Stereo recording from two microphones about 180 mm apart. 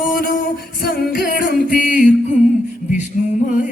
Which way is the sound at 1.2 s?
60° left (ahead or behind).